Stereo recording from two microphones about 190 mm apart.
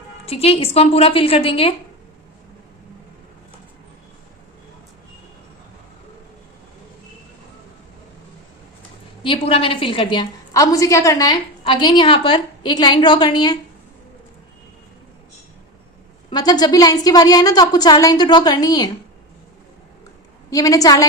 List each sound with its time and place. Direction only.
0.3 s a woman's voice: 30° left (ahead or behind)
9.2 s a woman's voice: 30° left (ahead or behind)
16.3 s a woman's voice: 20° left (ahead or behind)
20.5 s a woman's voice: 20° left (ahead or behind)